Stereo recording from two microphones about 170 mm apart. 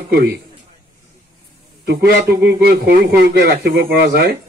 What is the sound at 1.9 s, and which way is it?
A man's voice, 70° right (ahead or behind).